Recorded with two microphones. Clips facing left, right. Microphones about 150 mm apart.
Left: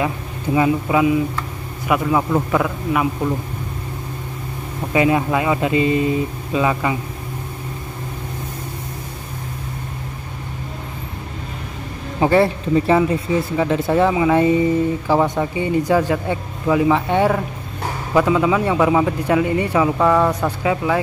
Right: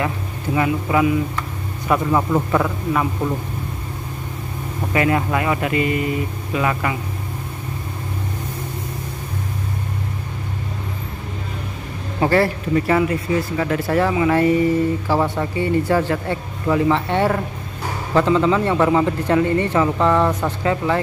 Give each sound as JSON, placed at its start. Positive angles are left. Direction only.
{"t": 0.6, "sound": "speech", "side_deg": 20}
{"t": 1.9, "sound": "speech", "side_deg": 5}
{"t": 4.9, "sound": "speech", "side_deg": 20}
{"t": 12.2, "sound": "speech", "side_deg": 20}